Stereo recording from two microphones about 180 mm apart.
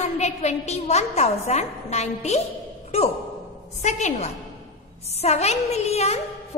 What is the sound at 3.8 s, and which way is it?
A woman's voice, 40° left (ahead or behind).